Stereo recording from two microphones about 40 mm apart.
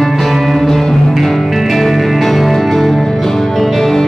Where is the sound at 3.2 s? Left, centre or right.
Centre.